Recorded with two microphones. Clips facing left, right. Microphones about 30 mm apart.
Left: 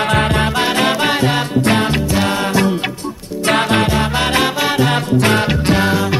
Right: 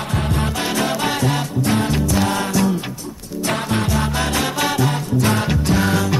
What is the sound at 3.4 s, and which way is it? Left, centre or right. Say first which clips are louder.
Music: left 7 dB; left.